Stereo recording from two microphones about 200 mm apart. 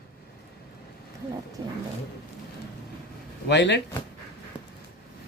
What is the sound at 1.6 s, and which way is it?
Roaring cats, 20° right (ahead or behind).